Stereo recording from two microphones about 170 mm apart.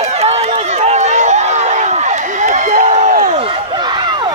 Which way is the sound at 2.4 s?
45° right (ahead or behind).